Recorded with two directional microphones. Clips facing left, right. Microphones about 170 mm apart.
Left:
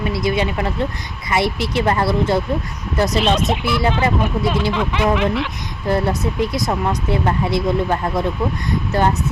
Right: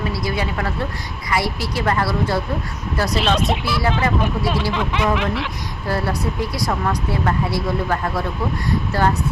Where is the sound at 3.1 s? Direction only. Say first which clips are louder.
Even; centre (ahead or behind).